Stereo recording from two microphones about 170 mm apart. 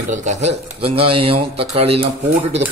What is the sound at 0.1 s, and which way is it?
Speech, 45° right (ahead or behind).